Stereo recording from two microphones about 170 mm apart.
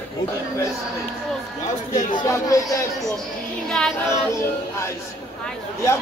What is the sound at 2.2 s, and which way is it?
Speech, 20° left (ahead or behind).